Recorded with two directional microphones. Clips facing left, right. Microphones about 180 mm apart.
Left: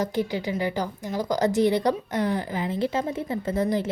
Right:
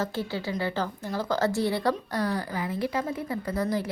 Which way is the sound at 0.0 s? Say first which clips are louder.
Left 4 dB; 15° left (ahead or behind).